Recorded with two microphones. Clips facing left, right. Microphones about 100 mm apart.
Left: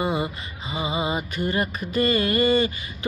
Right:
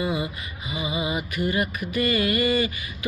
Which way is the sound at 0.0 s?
30° left (ahead or behind).